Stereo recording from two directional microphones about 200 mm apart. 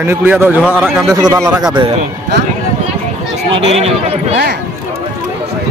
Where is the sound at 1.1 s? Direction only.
15° right (ahead or behind).